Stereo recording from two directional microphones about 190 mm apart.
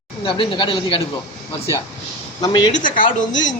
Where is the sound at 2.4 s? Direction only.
20° left (ahead or behind).